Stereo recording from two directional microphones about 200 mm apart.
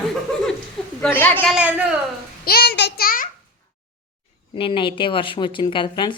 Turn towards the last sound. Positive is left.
turn(degrees=25)  # may be behind; listen again after turning